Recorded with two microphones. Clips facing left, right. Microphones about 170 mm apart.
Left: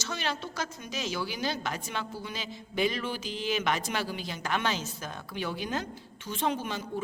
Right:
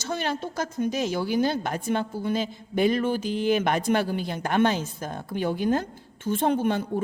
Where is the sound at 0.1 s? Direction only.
50° right (ahead or behind).